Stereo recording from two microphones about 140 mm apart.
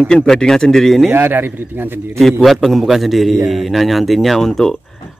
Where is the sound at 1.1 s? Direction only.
15° right (ahead or behind).